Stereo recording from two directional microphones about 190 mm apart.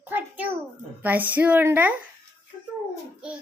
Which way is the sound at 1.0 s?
10° right (ahead or behind).